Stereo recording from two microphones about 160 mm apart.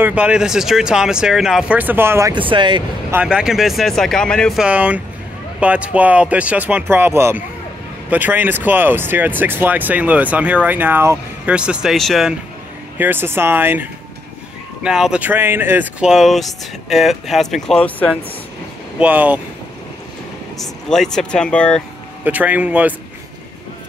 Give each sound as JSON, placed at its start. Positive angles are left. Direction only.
{"t": 0.0, "sound": "speech", "side_deg": -10}
{"t": 2.3, "sound": "speech", "side_deg": -30}
{"t": 3.1, "sound": "speech", "side_deg": -10}
{"t": 12.9, "sound": "speech", "side_deg": -10}
{"t": 18.9, "sound": "speech", "side_deg": -10}
{"t": 20.9, "sound": "speech", "side_deg": 5}
{"t": 22.2, "sound": "speech", "side_deg": -10}